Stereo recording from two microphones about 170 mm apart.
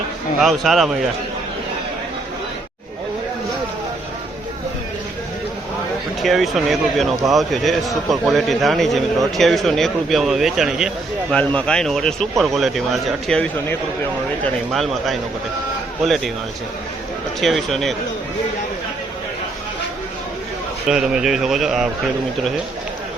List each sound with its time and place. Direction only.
0.3 s a man's voice: centre (ahead or behind)
6.2 s a man's voice: centre (ahead or behind)
17.4 s a man's voice: centre (ahead or behind)
20.8 s a man's voice: 5° right (ahead or behind)